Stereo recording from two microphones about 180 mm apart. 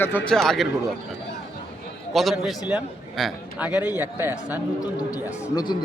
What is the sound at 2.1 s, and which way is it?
A man's voice, centre (ahead or behind).